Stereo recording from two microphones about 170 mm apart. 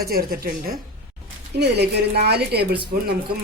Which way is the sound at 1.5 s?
75° right (ahead or behind).